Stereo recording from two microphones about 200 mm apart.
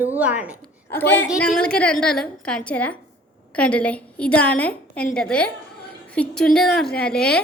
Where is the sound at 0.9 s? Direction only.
10° left (ahead or behind).